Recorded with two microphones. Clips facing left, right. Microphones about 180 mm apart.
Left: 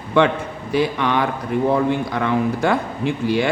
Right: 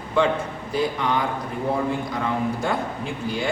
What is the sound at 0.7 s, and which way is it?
A man's voice, 70° left (ahead or behind).